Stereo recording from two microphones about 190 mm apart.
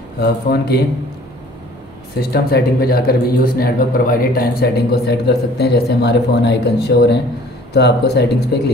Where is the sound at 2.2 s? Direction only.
55° left (ahead or behind).